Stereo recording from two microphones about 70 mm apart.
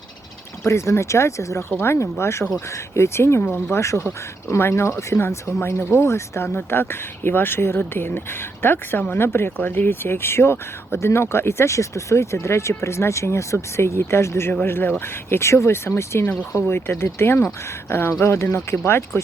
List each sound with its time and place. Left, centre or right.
0.6 s speech: left
9.6 s speech: left